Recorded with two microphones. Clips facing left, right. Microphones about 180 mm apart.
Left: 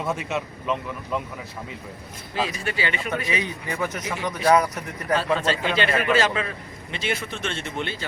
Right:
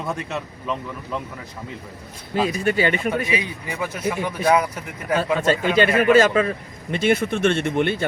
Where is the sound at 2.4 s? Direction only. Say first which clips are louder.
Right 8 dB; 50° right (ahead or behind).